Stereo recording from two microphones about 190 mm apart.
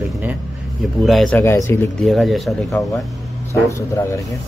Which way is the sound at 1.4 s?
15° left (ahead or behind).